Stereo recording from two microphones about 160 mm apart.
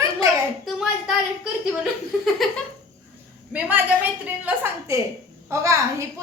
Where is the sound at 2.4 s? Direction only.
Centre (ahead or behind).